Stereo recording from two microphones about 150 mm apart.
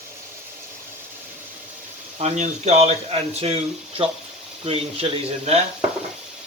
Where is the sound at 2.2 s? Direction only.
50° right (ahead or behind).